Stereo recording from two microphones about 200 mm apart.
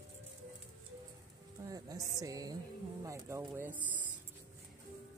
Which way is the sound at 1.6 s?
20° right (ahead or behind).